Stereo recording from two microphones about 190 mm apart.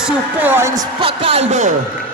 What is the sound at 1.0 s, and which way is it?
Speech, 30° right (ahead or behind).